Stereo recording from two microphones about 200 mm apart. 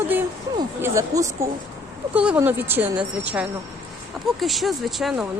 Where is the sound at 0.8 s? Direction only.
15° right (ahead or behind).